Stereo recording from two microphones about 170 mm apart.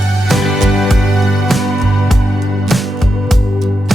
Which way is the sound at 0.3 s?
Centre (ahead or behind).